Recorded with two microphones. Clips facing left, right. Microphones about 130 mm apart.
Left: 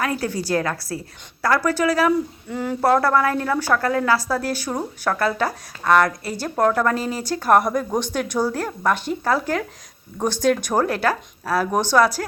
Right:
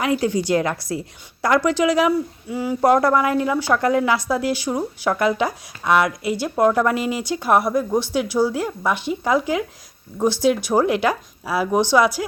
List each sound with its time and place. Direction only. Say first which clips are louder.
0.0 s a woman's voice: right 4 dB; 20° right (ahead or behind)
10.7 s speech: right 2 dB; 15° right (ahead or behind)